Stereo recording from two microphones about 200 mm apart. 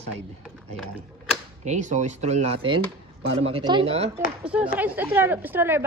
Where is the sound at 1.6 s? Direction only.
35° right (ahead or behind).